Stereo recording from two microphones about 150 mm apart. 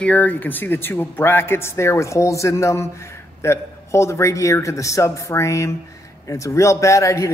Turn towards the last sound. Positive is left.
turn(degrees=20)  # may be behind; listen again after turning